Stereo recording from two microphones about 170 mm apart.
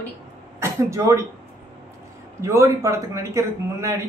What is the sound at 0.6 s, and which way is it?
Speech, 15° right (ahead or behind).